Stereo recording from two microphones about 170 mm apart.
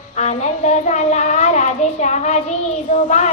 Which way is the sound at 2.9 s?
50° left (ahead or behind).